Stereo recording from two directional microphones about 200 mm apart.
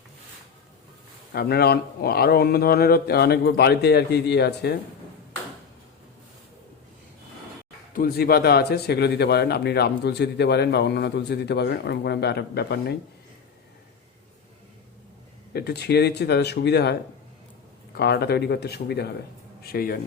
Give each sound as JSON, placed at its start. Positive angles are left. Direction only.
{"t": 1.3, "sound": "speech", "side_deg": 50}
{"t": 7.9, "sound": "speech", "side_deg": 50}
{"t": 15.5, "sound": "speech", "side_deg": 55}